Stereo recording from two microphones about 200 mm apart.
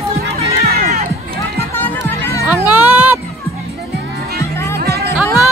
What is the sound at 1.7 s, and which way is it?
Music, 15° left (ahead or behind).